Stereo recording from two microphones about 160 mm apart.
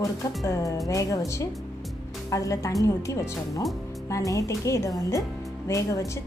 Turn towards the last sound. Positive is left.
turn(degrees=20)  # may be behind; listen again after turning